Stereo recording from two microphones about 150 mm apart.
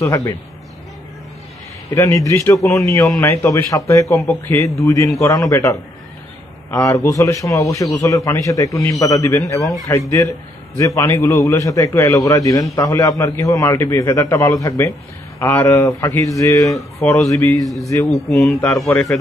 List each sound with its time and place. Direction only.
0.0 s a man's voice: 20° left (ahead or behind)
2.0 s a man's voice: 20° left (ahead or behind)
18.6 s speech: 5° left (ahead or behind)
18.9 s speech: 15° left (ahead or behind)